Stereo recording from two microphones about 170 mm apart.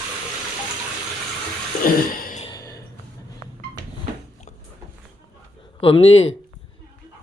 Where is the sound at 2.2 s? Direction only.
55° left (ahead or behind).